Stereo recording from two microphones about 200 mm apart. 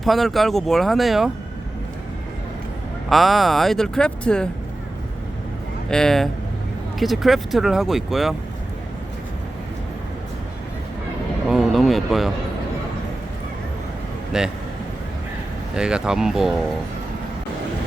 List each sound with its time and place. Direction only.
0.0 s speech: centre (ahead or behind)
3.1 s speech: centre (ahead or behind)
5.9 s speech: 5° left (ahead or behind)
11.4 s speech: centre (ahead or behind)
14.3 s speech: 5° right (ahead or behind)
15.7 s speech: 5° right (ahead or behind)